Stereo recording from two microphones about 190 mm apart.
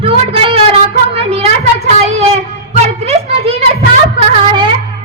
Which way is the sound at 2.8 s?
30° right (ahead or behind).